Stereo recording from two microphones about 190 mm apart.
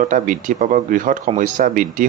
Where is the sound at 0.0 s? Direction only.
45° right (ahead or behind).